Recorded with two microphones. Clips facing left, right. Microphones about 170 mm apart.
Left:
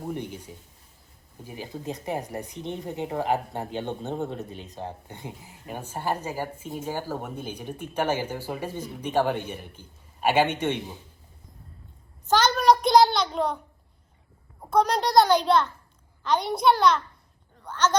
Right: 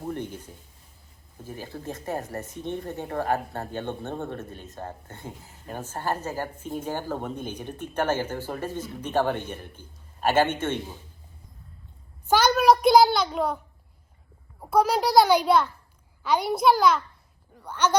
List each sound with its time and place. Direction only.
0.1 s a woman's voice: 10° left (ahead or behind)
12.2 s a sound: 10° right (ahead or behind)
14.7 s a child's voice: 5° right (ahead or behind)